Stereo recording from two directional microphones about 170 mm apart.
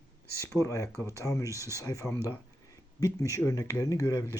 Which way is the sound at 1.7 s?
20° left (ahead or behind).